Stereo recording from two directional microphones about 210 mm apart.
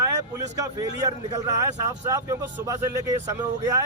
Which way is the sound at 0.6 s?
15° right (ahead or behind).